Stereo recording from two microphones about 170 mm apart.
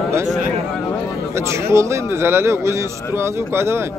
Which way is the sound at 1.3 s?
15° right (ahead or behind).